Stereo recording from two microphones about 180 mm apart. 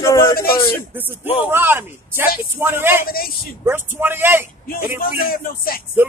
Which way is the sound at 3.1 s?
55° left (ahead or behind).